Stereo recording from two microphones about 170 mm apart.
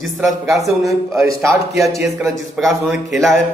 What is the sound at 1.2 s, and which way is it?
Speech, 15° right (ahead or behind).